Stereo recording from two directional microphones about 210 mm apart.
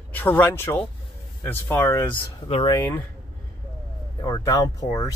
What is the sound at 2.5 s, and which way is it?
Speech, 25° left (ahead or behind).